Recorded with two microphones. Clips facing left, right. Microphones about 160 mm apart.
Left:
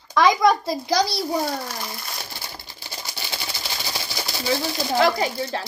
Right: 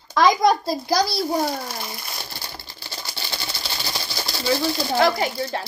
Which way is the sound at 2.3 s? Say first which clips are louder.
Even; 15° left (ahead or behind).